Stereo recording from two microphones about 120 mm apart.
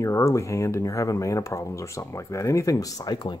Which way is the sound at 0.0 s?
25° left (ahead or behind).